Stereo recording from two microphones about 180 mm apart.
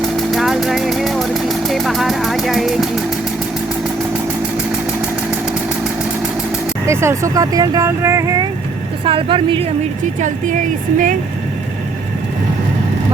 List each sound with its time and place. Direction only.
0.0 s vehicle: centre (ahead or behind)
6.8 s speech: 15° right (ahead or behind)
9.0 s speech: 30° right (ahead or behind)
10.2 s speech: 45° right (ahead or behind)